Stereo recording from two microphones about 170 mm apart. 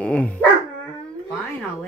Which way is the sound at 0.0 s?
5° left (ahead or behind).